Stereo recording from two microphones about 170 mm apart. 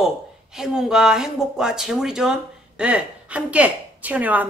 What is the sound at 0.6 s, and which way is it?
A woman's voice, 5° right (ahead or behind).